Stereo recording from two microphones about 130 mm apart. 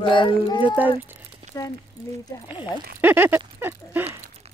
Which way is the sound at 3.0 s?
15° right (ahead or behind).